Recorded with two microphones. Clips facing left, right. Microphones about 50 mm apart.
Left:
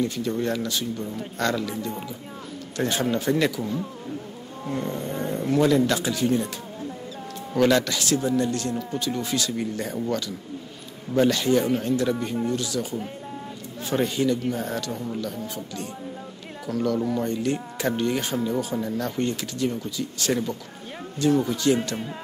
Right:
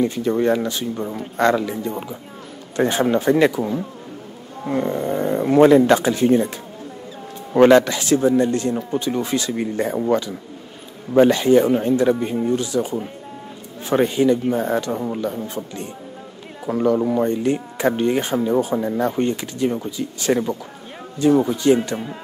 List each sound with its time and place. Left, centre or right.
0.0 s speech: right
7.5 s speech: right; by 22.1 s centre